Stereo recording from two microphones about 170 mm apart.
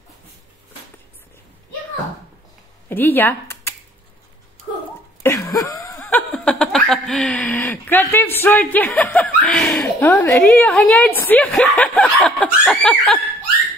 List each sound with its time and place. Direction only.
2.9 s speech: 10° left (ahead or behind)
5.2 s a sound: 15° left (ahead or behind)
6.0 s speech: 5° left (ahead or behind)